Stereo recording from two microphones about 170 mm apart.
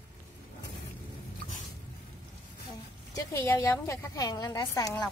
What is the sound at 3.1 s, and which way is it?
A woman's voice, 15° left (ahead or behind).